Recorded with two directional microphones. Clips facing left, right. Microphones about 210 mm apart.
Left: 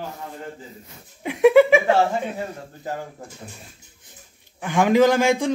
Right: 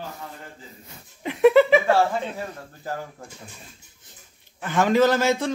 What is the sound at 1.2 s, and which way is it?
Speech, 10° left (ahead or behind).